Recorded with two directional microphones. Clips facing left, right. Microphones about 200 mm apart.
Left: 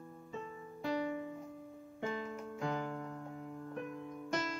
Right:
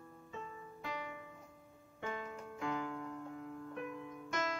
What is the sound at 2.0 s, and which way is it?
Keyboard, 35° left (ahead or behind).